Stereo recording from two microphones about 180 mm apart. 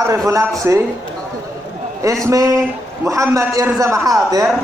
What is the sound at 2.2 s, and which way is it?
A man's voice, 20° right (ahead or behind).